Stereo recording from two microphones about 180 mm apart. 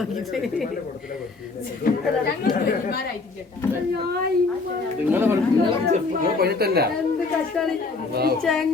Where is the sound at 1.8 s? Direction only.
55° left (ahead or behind).